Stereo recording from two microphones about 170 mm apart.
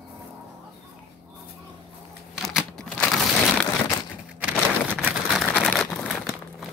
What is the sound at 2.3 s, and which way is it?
Crushing, centre (ahead or behind).